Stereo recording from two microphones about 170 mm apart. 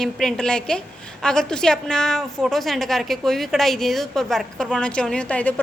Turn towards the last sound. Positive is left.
turn(degrees=10)  # may be behind; listen again after turning